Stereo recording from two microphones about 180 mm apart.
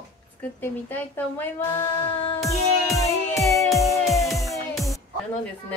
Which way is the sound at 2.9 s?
15° left (ahead or behind).